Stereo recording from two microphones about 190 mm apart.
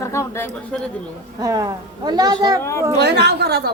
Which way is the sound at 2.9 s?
60° right (ahead or behind).